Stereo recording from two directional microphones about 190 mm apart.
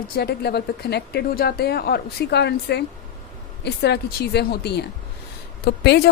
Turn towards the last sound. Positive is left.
turn(degrees=55)  # may be behind; listen again after turning